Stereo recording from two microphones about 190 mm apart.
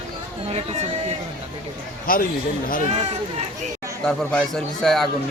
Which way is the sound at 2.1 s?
45° left (ahead or behind).